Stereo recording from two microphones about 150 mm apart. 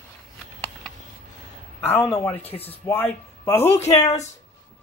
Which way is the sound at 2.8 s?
15° left (ahead or behind).